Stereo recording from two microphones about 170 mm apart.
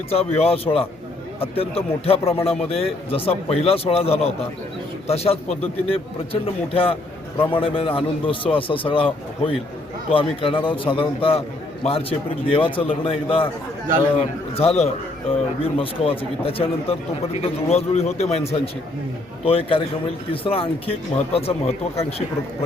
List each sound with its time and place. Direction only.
0.1 s a man's voice: 35° left (ahead or behind)